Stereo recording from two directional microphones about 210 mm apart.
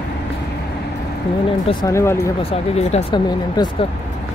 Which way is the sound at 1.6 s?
15° left (ahead or behind).